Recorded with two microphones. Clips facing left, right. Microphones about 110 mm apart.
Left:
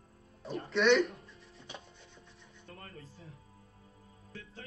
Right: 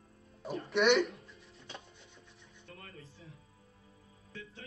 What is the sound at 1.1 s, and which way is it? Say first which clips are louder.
Music: left 1 dB; 30° left (ahead or behind).